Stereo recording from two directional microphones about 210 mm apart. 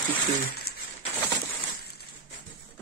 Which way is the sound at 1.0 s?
20° left (ahead or behind).